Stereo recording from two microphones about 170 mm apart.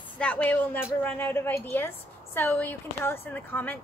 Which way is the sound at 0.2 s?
10° left (ahead or behind).